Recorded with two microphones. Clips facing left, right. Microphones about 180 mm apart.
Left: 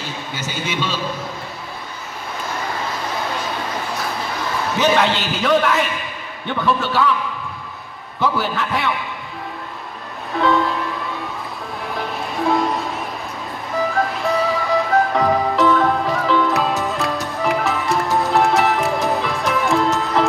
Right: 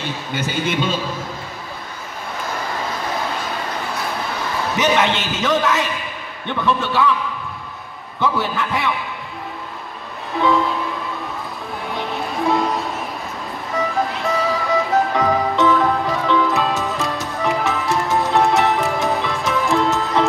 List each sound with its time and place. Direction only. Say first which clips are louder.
4.7 s a man's voice: left 1 dB; 20° right (ahead or behind)
6.6 s a man's voice: even; centre (ahead or behind)
8.2 s a man's voice: even; centre (ahead or behind)
10.4 s music: even; centre (ahead or behind)
11.9 s music: right 1 dB; centre (ahead or behind)